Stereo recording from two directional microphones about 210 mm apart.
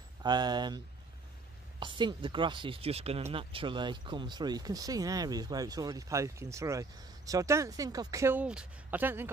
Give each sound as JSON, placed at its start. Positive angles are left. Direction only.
{"t": 0.2, "sound": "speech", "side_deg": -20}